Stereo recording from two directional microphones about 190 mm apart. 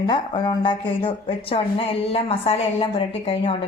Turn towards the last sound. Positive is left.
turn(degrees=30)  # may be behind; listen again after turning